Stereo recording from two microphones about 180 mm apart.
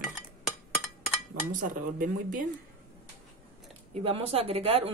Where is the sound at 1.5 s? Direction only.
50° right (ahead or behind).